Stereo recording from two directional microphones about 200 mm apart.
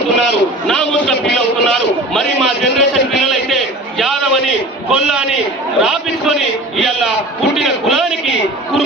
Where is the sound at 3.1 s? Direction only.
Centre (ahead or behind).